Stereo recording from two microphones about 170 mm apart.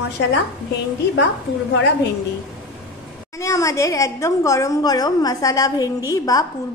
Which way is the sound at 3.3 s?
15° left (ahead or behind).